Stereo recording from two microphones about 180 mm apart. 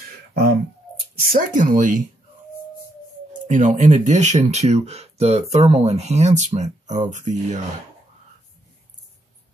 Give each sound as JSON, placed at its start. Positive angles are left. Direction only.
{"t": 1.3, "sound": "speech", "side_deg": -50}
{"t": 3.4, "sound": "speech", "side_deg": -40}